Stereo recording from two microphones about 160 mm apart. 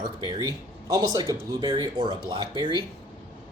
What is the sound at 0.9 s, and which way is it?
A man's voice, 20° right (ahead or behind).